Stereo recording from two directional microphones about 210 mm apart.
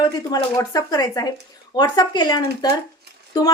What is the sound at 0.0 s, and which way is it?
A woman's voice, 20° left (ahead or behind).